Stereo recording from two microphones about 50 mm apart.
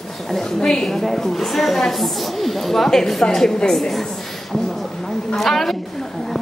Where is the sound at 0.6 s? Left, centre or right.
Centre.